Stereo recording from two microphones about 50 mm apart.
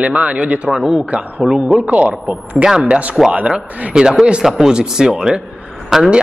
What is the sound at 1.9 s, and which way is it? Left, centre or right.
A man's voice, right.